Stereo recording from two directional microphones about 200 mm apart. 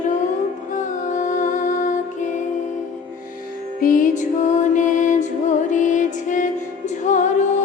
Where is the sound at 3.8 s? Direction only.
45° left (ahead or behind).